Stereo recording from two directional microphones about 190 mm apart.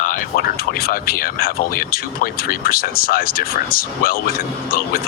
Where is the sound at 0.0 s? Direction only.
45° left (ahead or behind).